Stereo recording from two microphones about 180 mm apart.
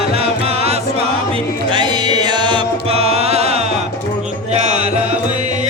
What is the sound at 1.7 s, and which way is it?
Music, 25° right (ahead or behind).